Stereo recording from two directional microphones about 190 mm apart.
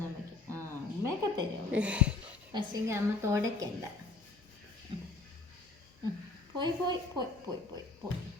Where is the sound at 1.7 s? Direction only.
5° right (ahead or behind).